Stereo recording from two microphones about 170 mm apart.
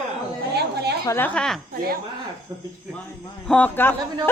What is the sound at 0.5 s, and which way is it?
Speech, 75° right (ahead or behind).